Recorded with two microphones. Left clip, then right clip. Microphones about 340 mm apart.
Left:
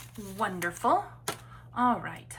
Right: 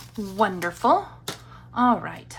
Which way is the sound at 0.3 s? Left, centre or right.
Centre.